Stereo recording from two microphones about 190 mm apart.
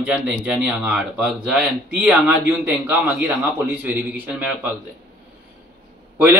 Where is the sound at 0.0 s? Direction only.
5° right (ahead or behind).